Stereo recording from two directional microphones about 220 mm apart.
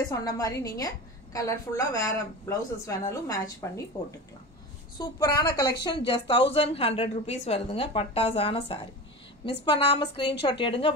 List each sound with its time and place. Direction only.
0.1 s a woman's voice: 15° left (ahead or behind)
4.9 s a woman's voice: 15° left (ahead or behind)